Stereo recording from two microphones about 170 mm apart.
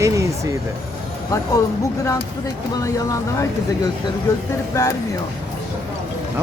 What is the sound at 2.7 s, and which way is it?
Speech, 20° left (ahead or behind).